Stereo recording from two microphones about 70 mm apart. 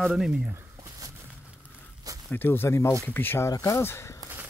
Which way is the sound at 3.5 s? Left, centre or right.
Left.